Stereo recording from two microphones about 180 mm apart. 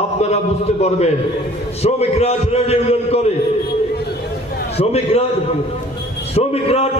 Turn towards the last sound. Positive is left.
turn(degrees=35)  # may be behind; listen again after turning